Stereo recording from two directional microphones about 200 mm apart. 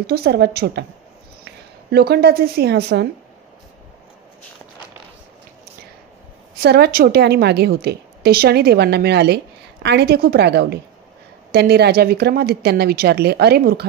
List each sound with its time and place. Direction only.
0.0 s a woman's voice: 50° right (ahead or behind)
6.6 s a woman's voice: 50° right (ahead or behind)